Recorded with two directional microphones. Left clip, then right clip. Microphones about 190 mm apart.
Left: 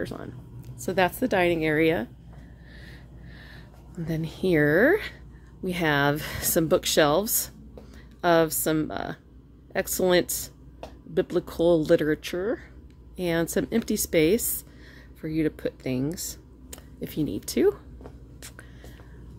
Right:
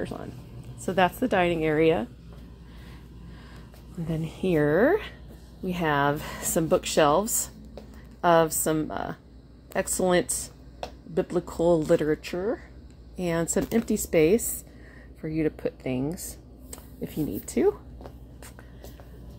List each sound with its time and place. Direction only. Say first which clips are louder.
0.0 s a woman's voice: even; 10° left (ahead or behind)
4.1 s a woman's voice: left 2 dB; 15° left (ahead or behind)